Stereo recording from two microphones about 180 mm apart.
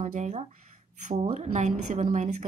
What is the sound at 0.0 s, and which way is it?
A woman's voice, 40° right (ahead or behind).